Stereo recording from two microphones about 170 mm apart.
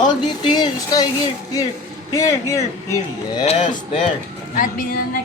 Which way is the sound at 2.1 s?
20° left (ahead or behind).